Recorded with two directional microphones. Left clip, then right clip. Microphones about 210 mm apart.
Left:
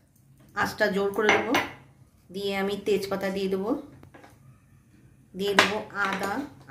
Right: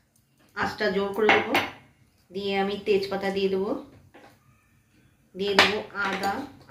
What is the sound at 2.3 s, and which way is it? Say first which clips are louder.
A woman's voice: right 2 dB; 55° left (ahead or behind).